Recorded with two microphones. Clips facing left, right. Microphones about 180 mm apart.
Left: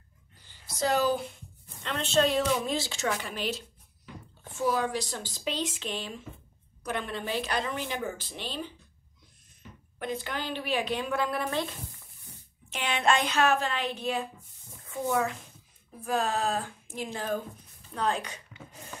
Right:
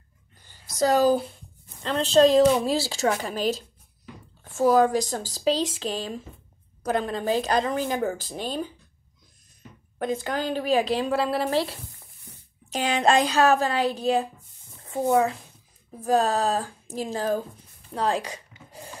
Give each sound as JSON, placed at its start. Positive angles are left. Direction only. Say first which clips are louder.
{"t": 0.4, "sound": "a woman's voice", "louder": "right 6 dB", "side_deg": -45}
{"t": 16.0, "sound": "a woman's voice", "louder": "right 7 dB", "side_deg": -40}